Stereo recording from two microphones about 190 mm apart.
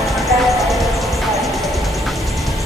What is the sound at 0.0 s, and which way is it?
Music, centre (ahead or behind).